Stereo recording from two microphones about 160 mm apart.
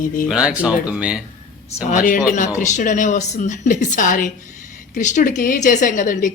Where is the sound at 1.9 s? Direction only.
55° left (ahead or behind).